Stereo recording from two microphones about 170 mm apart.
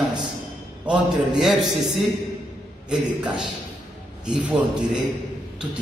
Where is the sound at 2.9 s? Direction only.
5° right (ahead or behind).